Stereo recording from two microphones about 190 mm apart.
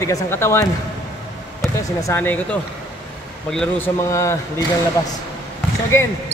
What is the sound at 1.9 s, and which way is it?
Speech, 15° left (ahead or behind).